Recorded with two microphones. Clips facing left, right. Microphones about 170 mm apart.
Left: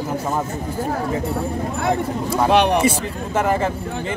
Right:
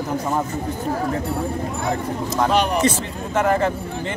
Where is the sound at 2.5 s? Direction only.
65° left (ahead or behind).